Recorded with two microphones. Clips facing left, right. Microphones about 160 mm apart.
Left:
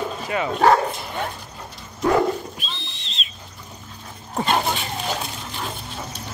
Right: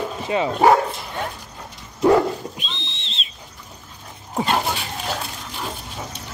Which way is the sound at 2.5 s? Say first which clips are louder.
Right 1 dB; 20° right (ahead or behind).